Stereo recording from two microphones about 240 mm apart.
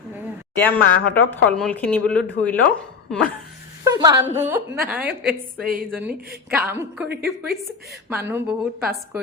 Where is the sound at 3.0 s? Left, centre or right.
Centre.